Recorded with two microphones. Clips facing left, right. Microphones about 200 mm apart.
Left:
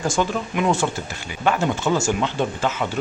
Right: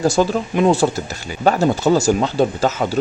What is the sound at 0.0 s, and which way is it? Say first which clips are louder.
Speech: right 6 dB; 35° right (ahead or behind).